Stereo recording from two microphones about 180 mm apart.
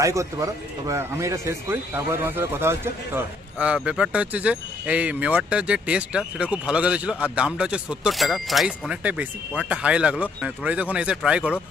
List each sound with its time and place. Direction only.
0.0 s speech: 15° right (ahead or behind)